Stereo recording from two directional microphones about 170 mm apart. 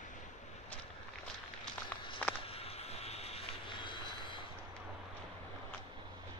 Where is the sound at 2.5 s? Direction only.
35° left (ahead or behind).